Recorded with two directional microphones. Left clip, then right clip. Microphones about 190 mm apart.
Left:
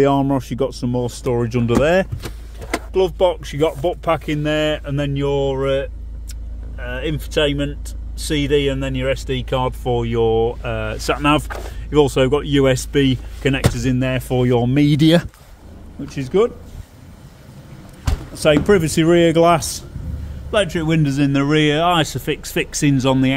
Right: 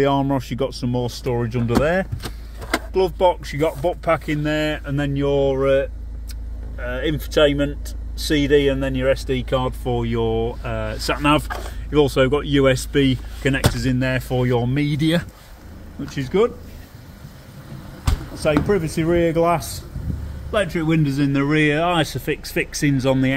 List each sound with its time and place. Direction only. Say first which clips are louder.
0.0 s speech: left 3 dB; 10° left (ahead or behind)
1.5 s speech: left 4 dB; 25° left (ahead or behind)
2.9 s speech: left 1 dB; 10° left (ahead or behind)
14.9 s speech: left 6 dB; 40° left (ahead or behind)
16.2 s speech: left 2 dB; 10° left (ahead or behind)
18.7 s speech: left 5 dB; 45° left (ahead or behind); by 23.3 s 20° left (ahead or behind)